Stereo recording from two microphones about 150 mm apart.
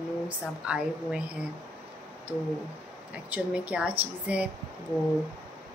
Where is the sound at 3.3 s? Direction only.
10° right (ahead or behind).